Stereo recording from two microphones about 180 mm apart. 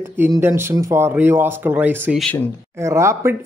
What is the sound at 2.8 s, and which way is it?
Speech, 15° right (ahead or behind).